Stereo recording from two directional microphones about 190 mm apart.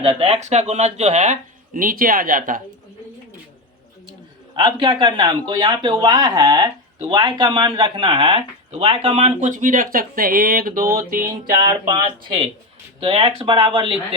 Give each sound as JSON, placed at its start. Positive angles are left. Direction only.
{"t": 0.0, "sound": "speech", "side_deg": -30}
{"t": 4.5, "sound": "speech", "side_deg": -25}
{"t": 11.6, "sound": "speech", "side_deg": -20}